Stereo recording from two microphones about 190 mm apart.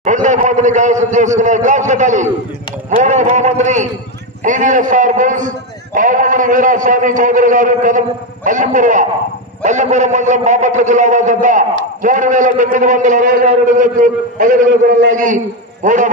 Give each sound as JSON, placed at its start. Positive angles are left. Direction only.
{"t": 0.0, "sound": "a man's voice", "side_deg": -40}